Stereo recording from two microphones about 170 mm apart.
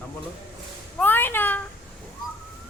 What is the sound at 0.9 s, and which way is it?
Speech, 10° left (ahead or behind).